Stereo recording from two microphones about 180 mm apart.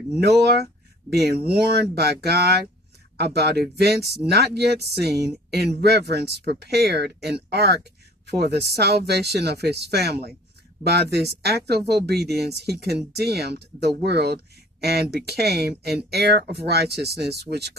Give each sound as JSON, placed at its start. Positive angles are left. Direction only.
{"t": 0.2, "sound": "speech", "side_deg": -65}